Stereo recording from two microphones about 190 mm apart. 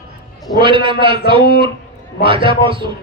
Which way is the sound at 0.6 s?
25° right (ahead or behind).